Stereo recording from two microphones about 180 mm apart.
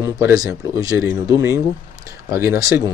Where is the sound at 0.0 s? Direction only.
20° right (ahead or behind).